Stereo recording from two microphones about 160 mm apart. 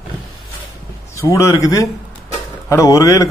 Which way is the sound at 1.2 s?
20° left (ahead or behind).